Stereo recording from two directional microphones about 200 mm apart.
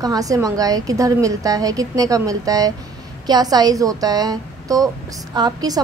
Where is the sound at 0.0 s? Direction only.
20° right (ahead or behind).